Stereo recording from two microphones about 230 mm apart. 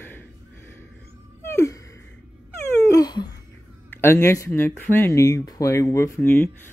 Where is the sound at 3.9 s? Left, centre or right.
Centre.